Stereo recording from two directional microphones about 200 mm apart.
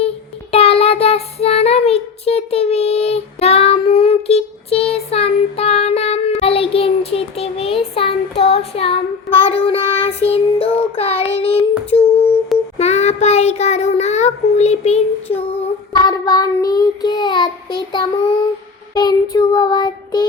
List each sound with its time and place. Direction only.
0.5 s child singing: 30° left (ahead or behind)
11.9 s a sound: 30° left (ahead or behind)
12.8 s child singing: 35° left (ahead or behind)